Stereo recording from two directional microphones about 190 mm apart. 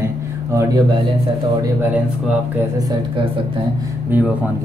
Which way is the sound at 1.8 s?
10° right (ahead or behind).